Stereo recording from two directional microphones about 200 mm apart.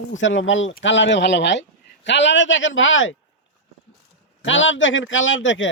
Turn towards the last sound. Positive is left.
turn(degrees=70)  # may be behind; listen again after turning